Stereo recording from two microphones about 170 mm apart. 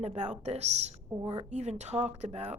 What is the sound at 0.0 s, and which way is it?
A woman's voice, 40° right (ahead or behind).